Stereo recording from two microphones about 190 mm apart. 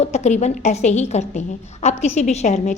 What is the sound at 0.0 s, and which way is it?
A woman's voice, 35° left (ahead or behind).